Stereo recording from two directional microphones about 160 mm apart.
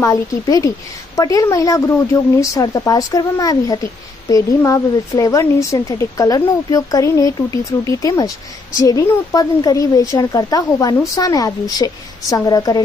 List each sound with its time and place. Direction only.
0.0 s a woman's voice: 20° left (ahead or behind)